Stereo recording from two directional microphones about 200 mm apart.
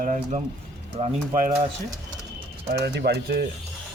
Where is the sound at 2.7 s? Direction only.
55° right (ahead or behind).